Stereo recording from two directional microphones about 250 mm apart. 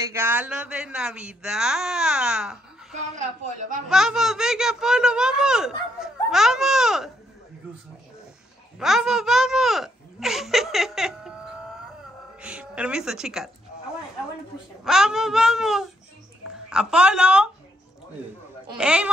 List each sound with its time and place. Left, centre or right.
0.0 s speech: centre
2.9 s a woman's voice: right
3.9 s speech: centre
8.7 s speech: centre
12.4 s a woman's voice: centre
14.9 s speech: centre
18.8 s speech: centre